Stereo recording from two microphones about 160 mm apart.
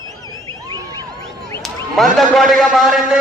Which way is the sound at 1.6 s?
Centre (ahead or behind).